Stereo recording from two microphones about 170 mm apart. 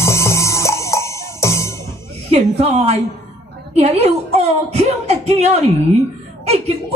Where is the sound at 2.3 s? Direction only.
35° right (ahead or behind).